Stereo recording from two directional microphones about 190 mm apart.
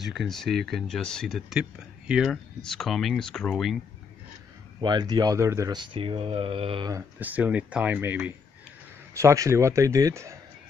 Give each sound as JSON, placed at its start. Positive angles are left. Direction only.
{"t": 0.0, "sound": "speech", "side_deg": 0}
{"t": 4.7, "sound": "speech", "side_deg": -20}
{"t": 7.2, "sound": "speech", "side_deg": -10}